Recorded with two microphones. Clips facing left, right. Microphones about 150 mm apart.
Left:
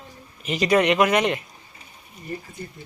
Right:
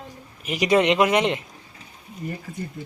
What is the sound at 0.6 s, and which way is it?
Speech, 20° right (ahead or behind).